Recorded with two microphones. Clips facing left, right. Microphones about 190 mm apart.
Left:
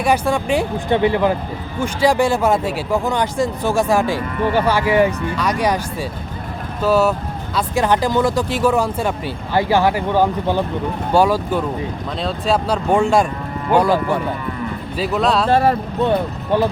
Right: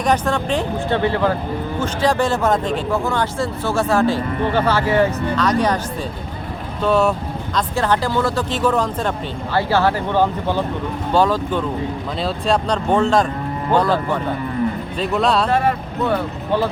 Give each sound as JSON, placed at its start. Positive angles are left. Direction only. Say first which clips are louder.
{"t": 0.0, "sound": "speech", "louder": "left 1 dB", "side_deg": 10}
{"t": 6.8, "sound": "speech", "louder": "left 1 dB", "side_deg": 5}
{"t": 7.8, "sound": "speech", "louder": "left 3 dB", "side_deg": 15}
{"t": 15.4, "sound": "speech", "louder": "left 3 dB", "side_deg": 35}